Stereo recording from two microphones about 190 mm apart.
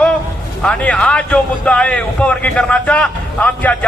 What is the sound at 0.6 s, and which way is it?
A man's voice, 5° left (ahead or behind).